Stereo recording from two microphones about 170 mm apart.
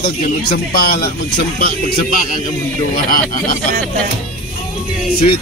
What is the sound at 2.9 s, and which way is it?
Speech, 55° left (ahead or behind).